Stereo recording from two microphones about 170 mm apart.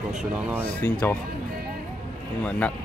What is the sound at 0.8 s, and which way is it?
Speech, 10° left (ahead or behind).